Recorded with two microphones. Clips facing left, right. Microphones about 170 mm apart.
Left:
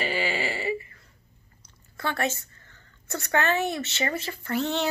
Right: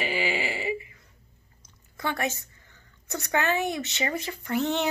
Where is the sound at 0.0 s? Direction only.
15° right (ahead or behind).